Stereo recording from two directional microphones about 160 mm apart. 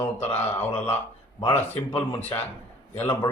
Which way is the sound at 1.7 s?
35° left (ahead or behind).